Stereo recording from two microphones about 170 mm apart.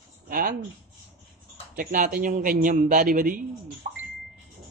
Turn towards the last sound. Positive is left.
turn(degrees=-55)  # may be behind; listen again after turning